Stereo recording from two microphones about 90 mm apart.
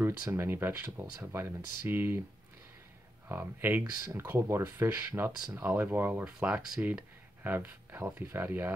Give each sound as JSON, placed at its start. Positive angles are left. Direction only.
{"t": 0.0, "sound": "speech", "side_deg": -25}
{"t": 3.3, "sound": "speech", "side_deg": -25}
{"t": 6.4, "sound": "speech", "side_deg": -10}